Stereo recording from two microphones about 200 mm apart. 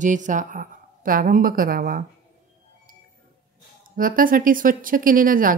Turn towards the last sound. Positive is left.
turn(degrees=-45)  # may be behind; listen again after turning